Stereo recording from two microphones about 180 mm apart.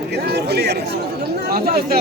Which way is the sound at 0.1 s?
70° right (ahead or behind).